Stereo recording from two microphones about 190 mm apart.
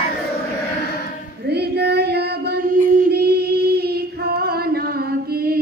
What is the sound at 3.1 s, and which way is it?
Female singing, 55° right (ahead or behind).